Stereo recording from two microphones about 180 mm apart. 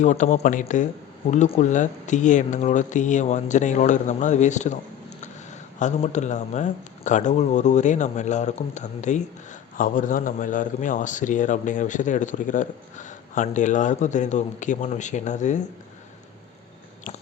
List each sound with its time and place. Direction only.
0.0 s a man's voice: 40° left (ahead or behind)
5.8 s a man's voice: 40° left (ahead or behind)